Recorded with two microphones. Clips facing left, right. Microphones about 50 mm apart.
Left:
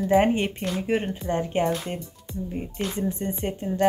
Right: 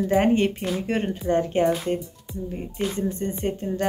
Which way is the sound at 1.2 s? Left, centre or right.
Left.